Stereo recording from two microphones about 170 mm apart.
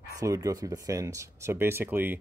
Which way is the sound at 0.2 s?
20° right (ahead or behind).